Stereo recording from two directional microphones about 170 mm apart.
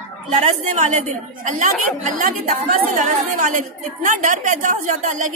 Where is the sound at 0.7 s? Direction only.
50° right (ahead or behind).